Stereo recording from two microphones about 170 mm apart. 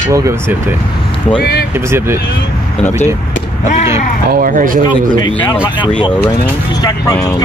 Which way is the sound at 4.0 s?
50° left (ahead or behind).